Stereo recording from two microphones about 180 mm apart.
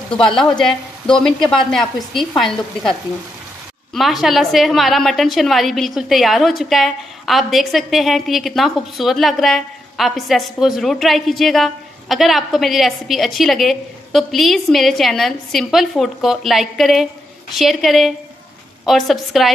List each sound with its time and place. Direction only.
0.4 s a woman's voice: centre (ahead or behind)
3.9 s a woman's voice: centre (ahead or behind)